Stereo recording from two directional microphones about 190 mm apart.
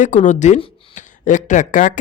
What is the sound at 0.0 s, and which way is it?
Speech, 40° left (ahead or behind).